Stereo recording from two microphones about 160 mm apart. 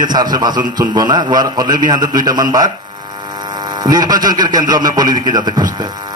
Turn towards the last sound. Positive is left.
turn(degrees=-25)  # may be behind; listen again after turning